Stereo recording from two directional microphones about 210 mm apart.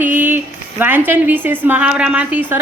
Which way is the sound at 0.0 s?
10° right (ahead or behind).